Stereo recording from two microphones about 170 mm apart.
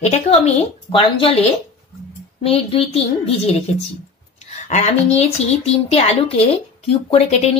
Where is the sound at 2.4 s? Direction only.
35° left (ahead or behind).